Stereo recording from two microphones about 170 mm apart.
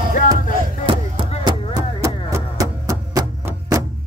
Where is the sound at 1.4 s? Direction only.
25° right (ahead or behind).